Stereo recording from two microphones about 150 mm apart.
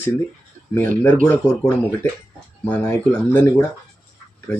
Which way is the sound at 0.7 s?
10° left (ahead or behind).